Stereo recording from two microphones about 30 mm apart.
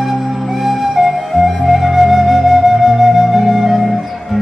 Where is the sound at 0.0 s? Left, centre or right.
Centre.